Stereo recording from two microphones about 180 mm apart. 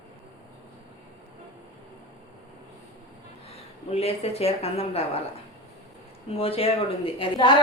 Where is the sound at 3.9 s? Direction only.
35° left (ahead or behind).